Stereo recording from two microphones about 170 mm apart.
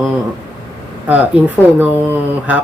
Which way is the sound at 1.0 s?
10° right (ahead or behind).